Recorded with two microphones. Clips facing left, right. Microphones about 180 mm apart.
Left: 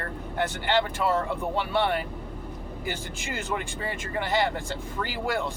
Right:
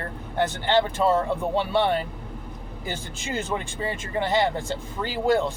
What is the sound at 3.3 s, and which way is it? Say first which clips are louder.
Speech: right 3 dB; 20° right (ahead or behind).